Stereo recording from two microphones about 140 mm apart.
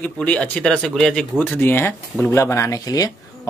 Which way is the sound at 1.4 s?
15° left (ahead or behind).